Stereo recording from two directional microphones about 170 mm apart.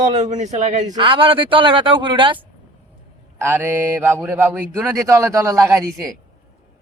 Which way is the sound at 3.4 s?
15° right (ahead or behind).